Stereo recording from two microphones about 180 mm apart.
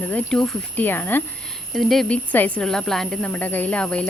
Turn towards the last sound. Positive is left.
turn(degrees=5)  # may be behind; listen again after turning